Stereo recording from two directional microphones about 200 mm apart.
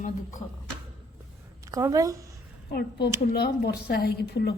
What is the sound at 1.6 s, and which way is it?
Speech, 15° right (ahead or behind).